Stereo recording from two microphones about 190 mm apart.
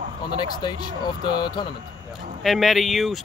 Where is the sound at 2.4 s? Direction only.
Centre (ahead or behind).